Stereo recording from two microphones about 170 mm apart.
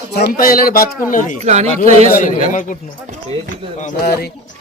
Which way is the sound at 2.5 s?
50° left (ahead or behind).